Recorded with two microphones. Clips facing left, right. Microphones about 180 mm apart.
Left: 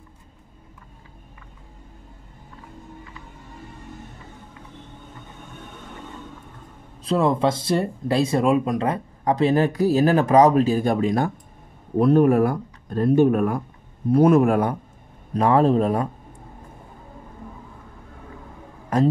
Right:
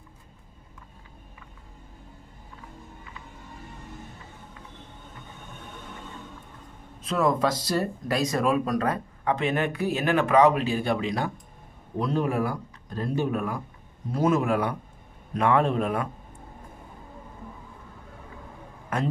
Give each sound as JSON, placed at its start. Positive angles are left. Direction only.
{"t": 7.0, "sound": "speech", "side_deg": 30}
{"t": 9.3, "sound": "speech", "side_deg": 35}
{"t": 15.3, "sound": "speech", "side_deg": 35}
{"t": 18.9, "sound": "speech", "side_deg": 35}